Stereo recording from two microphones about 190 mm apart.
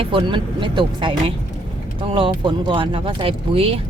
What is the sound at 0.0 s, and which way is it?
Speech, 25° right (ahead or behind).